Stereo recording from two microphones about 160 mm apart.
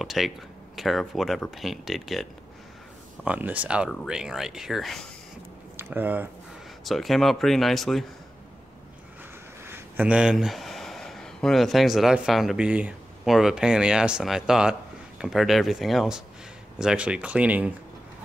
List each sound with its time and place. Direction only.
0.0 s speech: centre (ahead or behind)
3.3 s speech: 10° right (ahead or behind)
5.8 s speech: 15° right (ahead or behind)
6.8 s speech: centre (ahead or behind)
9.7 s speech: 10° right (ahead or behind)